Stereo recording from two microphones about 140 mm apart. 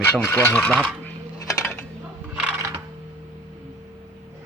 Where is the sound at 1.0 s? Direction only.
15° left (ahead or behind).